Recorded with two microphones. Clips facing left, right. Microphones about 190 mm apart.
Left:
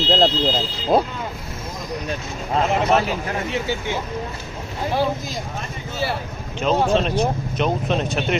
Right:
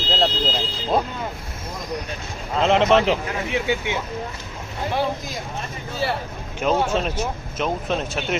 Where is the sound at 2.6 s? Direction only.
90° right.